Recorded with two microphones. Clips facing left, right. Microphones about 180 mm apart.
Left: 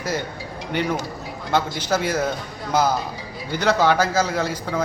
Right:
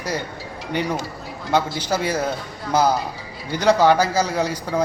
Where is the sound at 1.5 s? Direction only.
10° right (ahead or behind).